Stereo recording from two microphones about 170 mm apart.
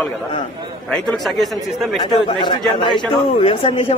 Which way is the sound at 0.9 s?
Centre (ahead or behind).